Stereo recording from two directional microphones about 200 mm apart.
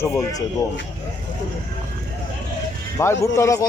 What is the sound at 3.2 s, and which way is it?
Speech, 15° left (ahead or behind).